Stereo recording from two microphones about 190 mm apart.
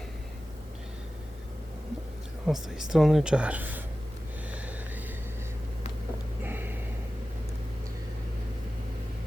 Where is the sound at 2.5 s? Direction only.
5° right (ahead or behind).